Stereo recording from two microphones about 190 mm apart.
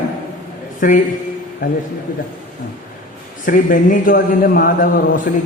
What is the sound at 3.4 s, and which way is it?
A man's voice, 45° left (ahead or behind).